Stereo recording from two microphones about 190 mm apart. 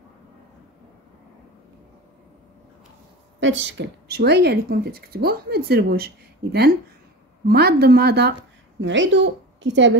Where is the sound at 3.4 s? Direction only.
75° right (ahead or behind); by 6.1 s 55° right (ahead or behind).